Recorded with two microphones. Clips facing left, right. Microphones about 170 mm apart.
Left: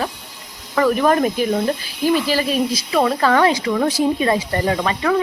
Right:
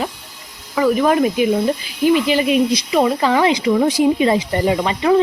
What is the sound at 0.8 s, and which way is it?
Speech, 10° right (ahead or behind).